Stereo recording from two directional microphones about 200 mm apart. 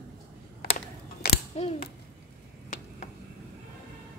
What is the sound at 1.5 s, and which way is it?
Speech, 30° left (ahead or behind).